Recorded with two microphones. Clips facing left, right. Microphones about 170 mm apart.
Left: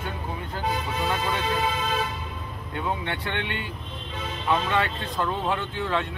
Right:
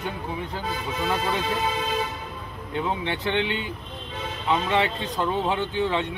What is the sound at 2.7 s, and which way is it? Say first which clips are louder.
Speech: right 2 dB; 20° right (ahead or behind).